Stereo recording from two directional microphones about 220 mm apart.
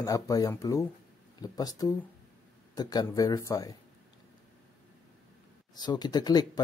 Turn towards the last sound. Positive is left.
turn(degrees=20)  # may be behind; listen again after turning